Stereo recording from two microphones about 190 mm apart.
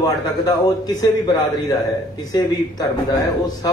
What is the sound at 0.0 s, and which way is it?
A man's voice, 20° left (ahead or behind).